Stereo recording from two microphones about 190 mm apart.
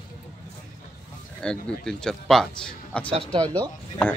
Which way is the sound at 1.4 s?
5° left (ahead or behind).